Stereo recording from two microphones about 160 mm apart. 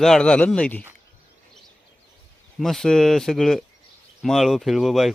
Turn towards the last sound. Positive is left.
turn(degrees=0)  # may be behind; listen again after turning